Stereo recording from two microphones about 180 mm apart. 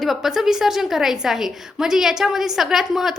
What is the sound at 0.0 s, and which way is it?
A woman's voice, centre (ahead or behind).